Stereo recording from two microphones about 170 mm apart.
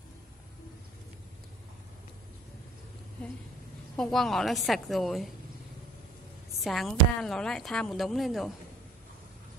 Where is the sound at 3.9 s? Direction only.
5° left (ahead or behind).